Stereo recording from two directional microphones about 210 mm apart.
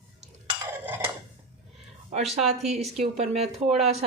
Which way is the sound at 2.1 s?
30° right (ahead or behind).